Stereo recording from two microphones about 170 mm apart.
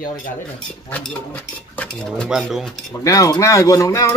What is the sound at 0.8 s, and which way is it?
Speech, 10° left (ahead or behind).